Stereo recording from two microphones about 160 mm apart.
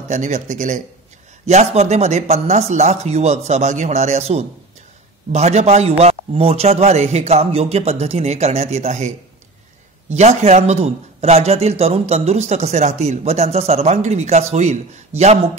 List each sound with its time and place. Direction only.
0.1 s a man's voice: 50° right (ahead or behind)